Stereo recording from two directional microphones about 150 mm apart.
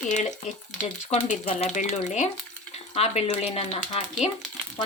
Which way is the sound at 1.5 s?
55° left (ahead or behind).